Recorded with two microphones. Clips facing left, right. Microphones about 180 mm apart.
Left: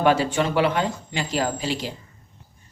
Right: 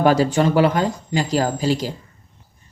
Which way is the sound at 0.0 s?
40° right (ahead or behind).